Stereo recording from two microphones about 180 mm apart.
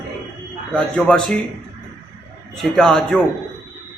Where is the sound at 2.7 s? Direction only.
5° left (ahead or behind).